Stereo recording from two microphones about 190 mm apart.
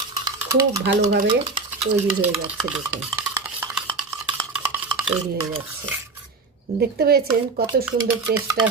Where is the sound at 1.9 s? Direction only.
10° right (ahead or behind).